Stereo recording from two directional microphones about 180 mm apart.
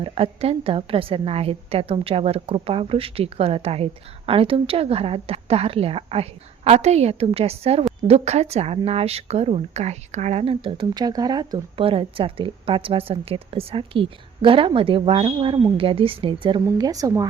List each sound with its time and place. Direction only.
0.0 s speech: 35° right (ahead or behind)